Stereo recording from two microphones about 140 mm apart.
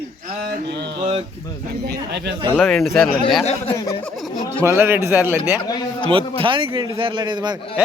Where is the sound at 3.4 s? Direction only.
50° left (ahead or behind).